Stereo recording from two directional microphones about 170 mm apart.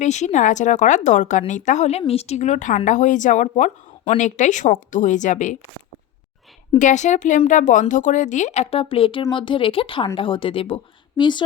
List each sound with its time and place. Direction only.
0.0 s speech: 45° left (ahead or behind)
6.7 s a woman's voice: 45° left (ahead or behind); by 11.4 s 25° left (ahead or behind)